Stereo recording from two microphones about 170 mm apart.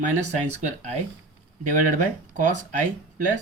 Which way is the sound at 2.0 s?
50° right (ahead or behind).